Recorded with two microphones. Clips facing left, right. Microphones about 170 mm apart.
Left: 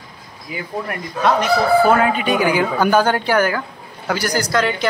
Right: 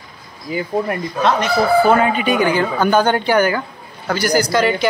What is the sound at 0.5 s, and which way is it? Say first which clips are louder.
Speech: right 7 dB; 30° right (ahead or behind).